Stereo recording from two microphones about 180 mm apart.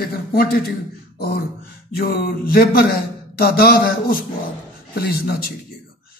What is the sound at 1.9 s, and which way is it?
Speech, 55° left (ahead or behind).